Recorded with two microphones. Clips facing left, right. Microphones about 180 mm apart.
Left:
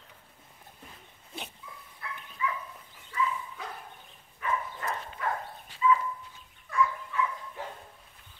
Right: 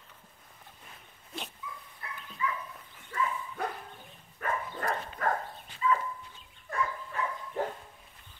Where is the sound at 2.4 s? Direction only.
45° right (ahead or behind).